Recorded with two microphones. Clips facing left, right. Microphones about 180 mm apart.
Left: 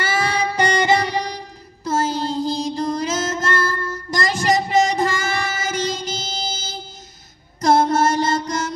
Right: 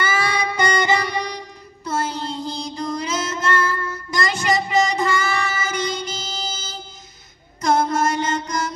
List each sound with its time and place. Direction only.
0.1 s music: 40° left (ahead or behind)
1.9 s child singing: 40° left (ahead or behind)
7.6 s mantra: 40° left (ahead or behind)